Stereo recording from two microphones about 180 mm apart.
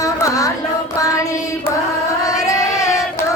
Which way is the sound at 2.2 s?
20° left (ahead or behind).